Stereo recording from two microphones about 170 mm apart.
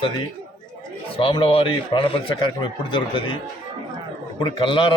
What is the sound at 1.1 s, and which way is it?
A man's voice, 30° left (ahead or behind).